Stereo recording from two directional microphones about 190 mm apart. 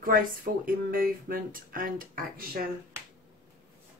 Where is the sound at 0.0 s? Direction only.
50° right (ahead or behind).